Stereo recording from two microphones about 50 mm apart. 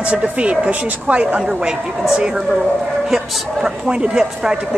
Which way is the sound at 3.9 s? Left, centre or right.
Centre.